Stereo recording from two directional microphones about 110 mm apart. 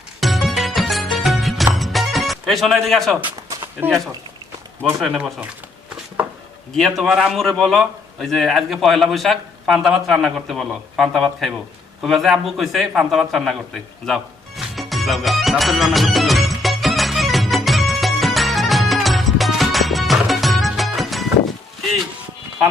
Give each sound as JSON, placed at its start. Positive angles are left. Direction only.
{"t": 0.2, "sound": "music", "side_deg": 0}
{"t": 3.6, "sound": "a sound", "side_deg": -20}
{"t": 4.9, "sound": "a man's voice", "side_deg": -5}
{"t": 6.7, "sound": "a man's voice", "side_deg": 0}
{"t": 14.1, "sound": "music", "side_deg": 0}